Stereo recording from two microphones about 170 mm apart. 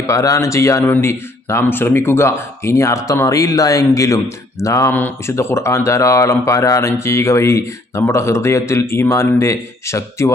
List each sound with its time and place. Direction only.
0.1 s speech: 20° left (ahead or behind)